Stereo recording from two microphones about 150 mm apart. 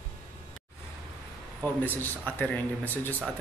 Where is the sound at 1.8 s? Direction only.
10° left (ahead or behind).